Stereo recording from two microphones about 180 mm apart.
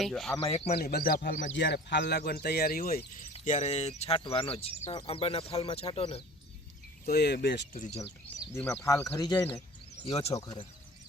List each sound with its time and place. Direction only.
0.0 s speech: centre (ahead or behind)
0.3 s speech: 30° left (ahead or behind)
0.8 s speech: 60° left (ahead or behind)
1.5 s speech: 75° left (ahead or behind); by 3.1 s 55° left (ahead or behind)
3.4 s speech: 40° left (ahead or behind)
7.0 s speech: 65° left (ahead or behind)
7.7 s speech: 35° left (ahead or behind)
8.5 s speech: 10° left (ahead or behind)
9.0 s speech: 20° left (ahead or behind)
10.1 s speech: 35° left (ahead or behind)
10.3 s speech: 25° left (ahead or behind)